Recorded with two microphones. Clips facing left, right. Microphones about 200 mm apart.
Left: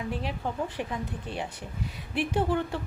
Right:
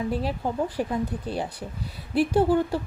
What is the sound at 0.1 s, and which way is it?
A woman's voice, 40° right (ahead or behind).